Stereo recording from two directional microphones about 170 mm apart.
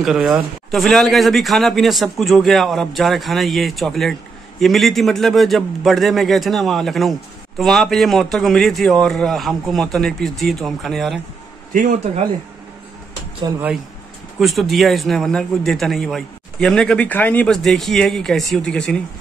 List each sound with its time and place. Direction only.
0.0 s a man's voice: 5° right (ahead or behind)
13.5 s speech: 20° right (ahead or behind)
14.4 s a man's voice: centre (ahead or behind)